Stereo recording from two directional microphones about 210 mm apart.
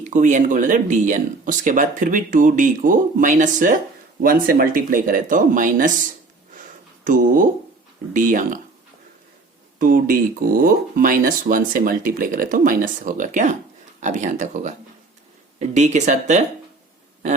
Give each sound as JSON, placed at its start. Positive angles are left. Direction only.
{"t": 0.0, "sound": "speech", "side_deg": -35}
{"t": 9.7, "sound": "speech", "side_deg": -40}